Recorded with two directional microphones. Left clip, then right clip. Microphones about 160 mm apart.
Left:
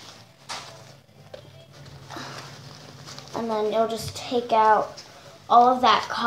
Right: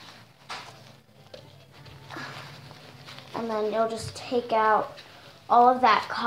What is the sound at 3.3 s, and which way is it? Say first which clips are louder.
A woman's voice: left 3 dB; 10° left (ahead or behind).